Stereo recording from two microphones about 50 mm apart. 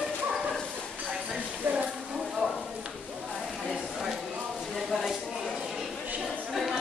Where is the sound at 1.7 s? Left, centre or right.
Right.